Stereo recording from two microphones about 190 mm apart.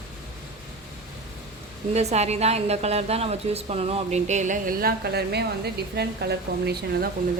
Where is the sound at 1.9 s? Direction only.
35° right (ahead or behind); by 7.1 s 55° right (ahead or behind).